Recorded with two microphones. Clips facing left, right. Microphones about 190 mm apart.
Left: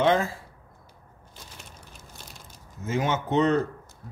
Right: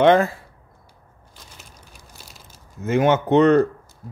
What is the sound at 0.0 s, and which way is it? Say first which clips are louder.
Speech: right 7 dB; 65° right (ahead or behind).